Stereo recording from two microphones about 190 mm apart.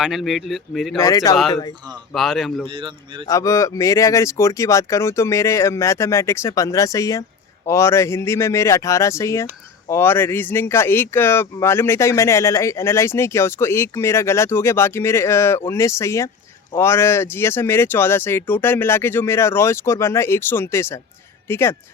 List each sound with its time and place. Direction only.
0.0 s speech: centre (ahead or behind)
0.9 s speech: 15° left (ahead or behind)
2.1 s speech: centre (ahead or behind)
2.6 s speech: 25° right (ahead or behind)
3.2 s speech: 15° left (ahead or behind)